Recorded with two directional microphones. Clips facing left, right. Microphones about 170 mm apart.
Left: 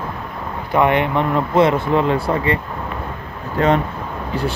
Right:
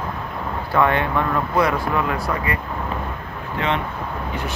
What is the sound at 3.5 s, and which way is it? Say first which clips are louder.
Speech: left 7 dB; 40° left (ahead or behind).